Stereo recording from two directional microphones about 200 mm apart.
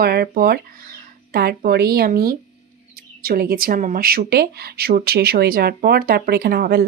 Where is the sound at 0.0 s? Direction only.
50° right (ahead or behind).